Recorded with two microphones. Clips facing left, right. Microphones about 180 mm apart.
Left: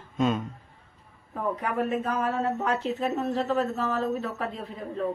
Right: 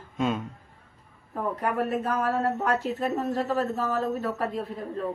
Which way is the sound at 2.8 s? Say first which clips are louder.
Even; 10° right (ahead or behind).